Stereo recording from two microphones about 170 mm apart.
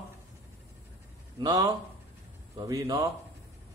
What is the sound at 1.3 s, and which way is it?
A man's voice, 20° right (ahead or behind).